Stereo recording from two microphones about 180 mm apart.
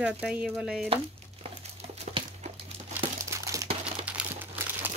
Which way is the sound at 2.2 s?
30° right (ahead or behind).